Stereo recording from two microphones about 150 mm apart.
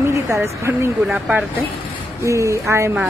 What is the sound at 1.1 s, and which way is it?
Speech, 5° right (ahead or behind).